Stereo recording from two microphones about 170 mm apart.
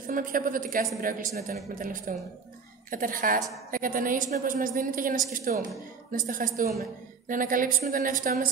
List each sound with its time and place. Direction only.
0.0 s a woman's voice: 55° right (ahead or behind)